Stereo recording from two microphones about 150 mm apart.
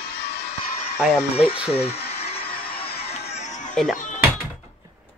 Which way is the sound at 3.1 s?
45° left (ahead or behind).